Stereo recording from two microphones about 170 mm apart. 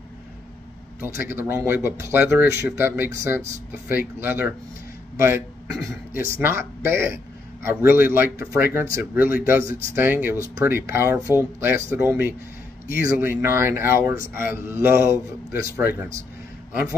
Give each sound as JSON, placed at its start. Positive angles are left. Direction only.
{"t": 1.0, "sound": "a man's voice", "side_deg": -15}